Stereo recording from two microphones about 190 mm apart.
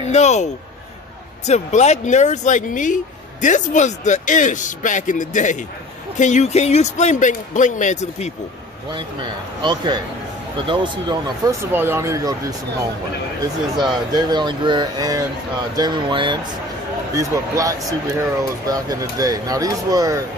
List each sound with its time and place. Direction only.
0.0 s speech: 35° left (ahead or behind)
8.9 s speech: 25° right (ahead or behind)
11.7 s speech: 10° right (ahead or behind)